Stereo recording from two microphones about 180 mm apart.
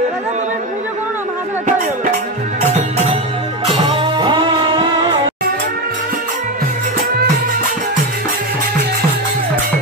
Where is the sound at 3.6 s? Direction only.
25° right (ahead or behind).